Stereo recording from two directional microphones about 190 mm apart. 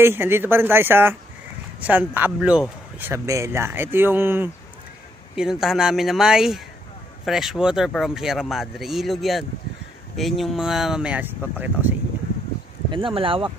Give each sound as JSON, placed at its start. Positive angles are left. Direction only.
{"t": 0.0, "sound": "speech", "side_deg": -10}
{"t": 12.9, "sound": "speech", "side_deg": -25}